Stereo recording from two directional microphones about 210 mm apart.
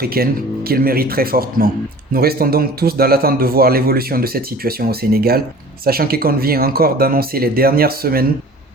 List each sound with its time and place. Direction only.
0.0 s a man's voice: 45° right (ahead or behind)